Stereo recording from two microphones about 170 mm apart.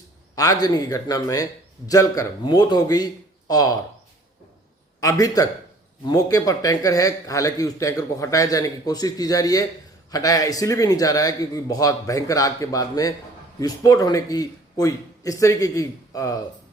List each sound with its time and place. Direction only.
0.3 s a man's voice: 20° left (ahead or behind)
4.9 s a man's voice: 20° left (ahead or behind)